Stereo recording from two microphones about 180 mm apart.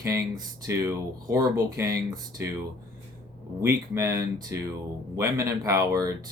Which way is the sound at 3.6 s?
15° right (ahead or behind).